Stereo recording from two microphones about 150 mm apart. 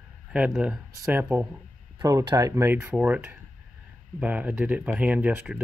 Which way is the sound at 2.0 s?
25° right (ahead or behind).